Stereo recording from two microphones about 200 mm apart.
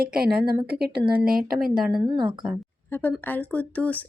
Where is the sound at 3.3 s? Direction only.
5° left (ahead or behind).